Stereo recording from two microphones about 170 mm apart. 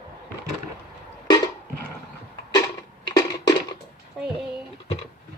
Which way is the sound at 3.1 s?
20° left (ahead or behind).